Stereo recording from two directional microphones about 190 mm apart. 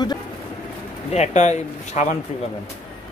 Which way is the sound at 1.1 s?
35° left (ahead or behind).